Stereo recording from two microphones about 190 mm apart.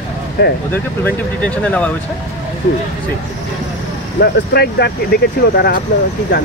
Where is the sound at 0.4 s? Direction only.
60° left (ahead or behind).